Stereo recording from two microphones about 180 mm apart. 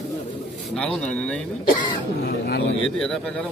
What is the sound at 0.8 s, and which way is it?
Speech, 5° left (ahead or behind).